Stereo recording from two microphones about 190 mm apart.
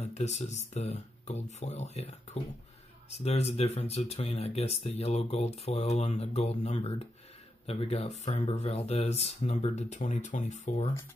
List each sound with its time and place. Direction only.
0.0 s speech: 35° left (ahead or behind)